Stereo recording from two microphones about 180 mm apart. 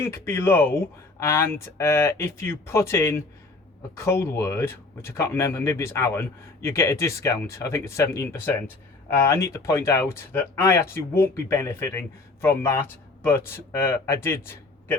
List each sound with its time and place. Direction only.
0.0 s speech: 15° left (ahead or behind)